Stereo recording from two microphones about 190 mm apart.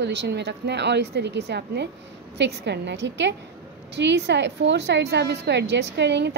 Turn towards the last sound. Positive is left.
turn(degrees=-65)  # may be behind; listen again after turning